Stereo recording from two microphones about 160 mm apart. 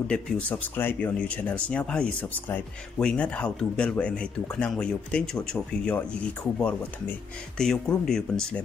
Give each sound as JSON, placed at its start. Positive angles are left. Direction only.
{"t": 0.1, "sound": "speech", "side_deg": 10}
{"t": 7.5, "sound": "speech", "side_deg": 5}